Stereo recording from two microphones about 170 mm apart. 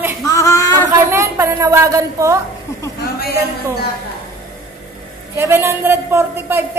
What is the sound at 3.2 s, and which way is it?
Speech, 65° left (ahead or behind).